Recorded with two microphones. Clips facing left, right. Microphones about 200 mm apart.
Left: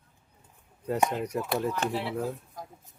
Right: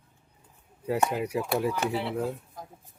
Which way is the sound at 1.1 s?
10° right (ahead or behind).